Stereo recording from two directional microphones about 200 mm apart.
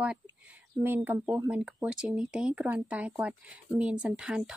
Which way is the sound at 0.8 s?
10° right (ahead or behind).